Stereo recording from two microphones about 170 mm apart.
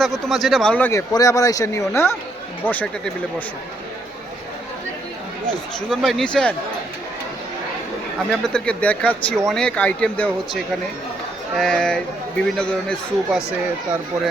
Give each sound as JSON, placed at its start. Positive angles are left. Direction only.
{"t": 0.0, "sound": "speech", "side_deg": 0}
{"t": 5.9, "sound": "speech", "side_deg": 0}
{"t": 8.3, "sound": "speech", "side_deg": 5}